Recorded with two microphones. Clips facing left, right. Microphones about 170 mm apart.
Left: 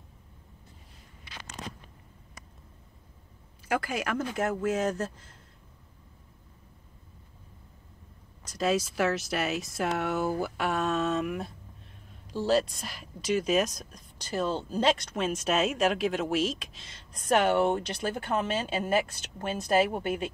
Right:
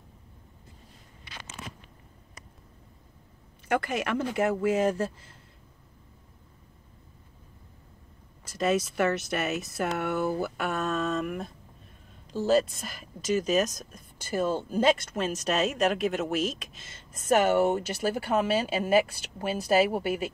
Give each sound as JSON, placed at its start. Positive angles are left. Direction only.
{"t": 1.6, "sound": "a sound", "side_deg": 40}
{"t": 3.6, "sound": "speech", "side_deg": 0}
{"t": 8.5, "sound": "speech", "side_deg": 0}